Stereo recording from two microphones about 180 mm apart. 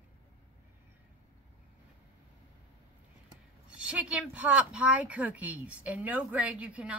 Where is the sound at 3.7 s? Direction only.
5° right (ahead or behind).